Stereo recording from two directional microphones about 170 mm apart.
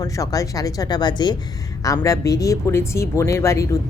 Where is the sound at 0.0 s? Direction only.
20° left (ahead or behind).